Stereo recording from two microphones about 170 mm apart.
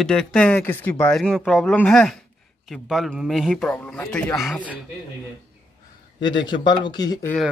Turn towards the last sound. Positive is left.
turn(degrees=25)  # may be behind; listen again after turning